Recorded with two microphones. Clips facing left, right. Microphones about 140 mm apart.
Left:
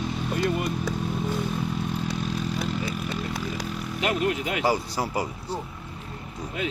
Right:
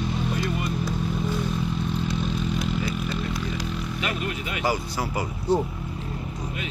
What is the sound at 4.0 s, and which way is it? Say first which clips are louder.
Vehicle: left 7 dB; 80° left.